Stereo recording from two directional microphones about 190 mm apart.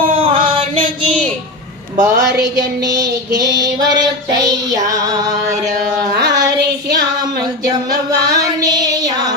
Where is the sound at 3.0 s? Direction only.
20° right (ahead or behind).